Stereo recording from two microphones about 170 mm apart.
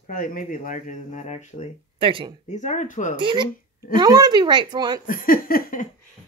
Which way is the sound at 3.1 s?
30° right (ahead or behind).